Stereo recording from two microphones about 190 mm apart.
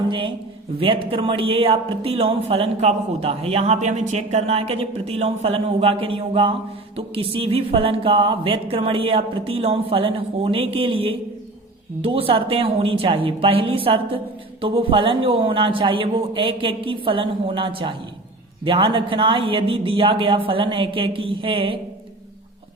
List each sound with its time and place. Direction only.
0.1 s speech: 25° right (ahead or behind)